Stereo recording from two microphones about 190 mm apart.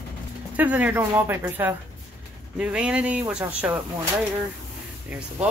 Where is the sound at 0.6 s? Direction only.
5° right (ahead or behind).